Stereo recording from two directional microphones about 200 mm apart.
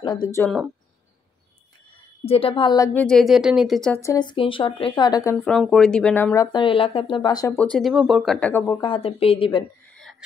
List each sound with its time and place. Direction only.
0.0 s speech: 20° left (ahead or behind)
0.4 s speech: centre (ahead or behind)
2.2 s speech: 30° left (ahead or behind); by 4.0 s centre (ahead or behind)
4.0 s speech: 20° left (ahead or behind)
5.4 s speech: centre (ahead or behind); by 7.5 s 20° left (ahead or behind)
7.5 s speech: 5° left (ahead or behind)
8.8 s speech: 25° left (ahead or behind)